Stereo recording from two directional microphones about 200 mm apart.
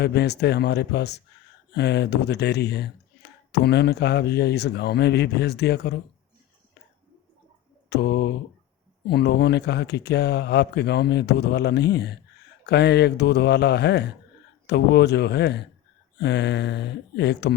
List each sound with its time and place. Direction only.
0.0 s speech: 55° left (ahead or behind)
7.9 s mantra: 55° left (ahead or behind)
9.0 s speech: 55° left (ahead or behind)